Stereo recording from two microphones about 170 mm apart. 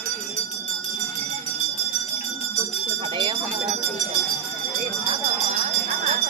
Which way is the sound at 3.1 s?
30° right (ahead or behind).